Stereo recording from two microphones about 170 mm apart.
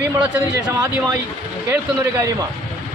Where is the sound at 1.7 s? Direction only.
15° right (ahead or behind).